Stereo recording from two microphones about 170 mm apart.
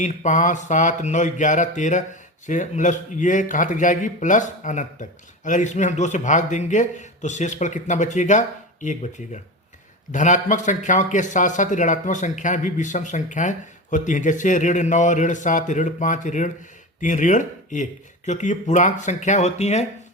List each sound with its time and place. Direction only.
0.0 s a man's voice: 45° left (ahead or behind)